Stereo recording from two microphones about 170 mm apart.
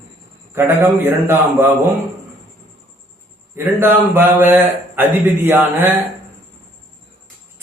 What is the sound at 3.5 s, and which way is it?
A man's voice, 15° right (ahead or behind).